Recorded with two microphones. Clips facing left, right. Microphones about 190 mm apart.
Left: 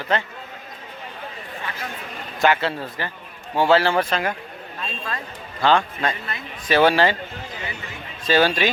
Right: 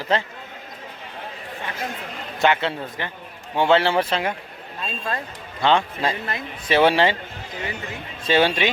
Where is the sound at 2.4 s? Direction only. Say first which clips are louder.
Left 1 dB; 20° right (ahead or behind).